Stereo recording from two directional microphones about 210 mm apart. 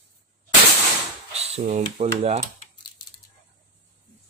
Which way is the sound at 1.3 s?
30° right (ahead or behind).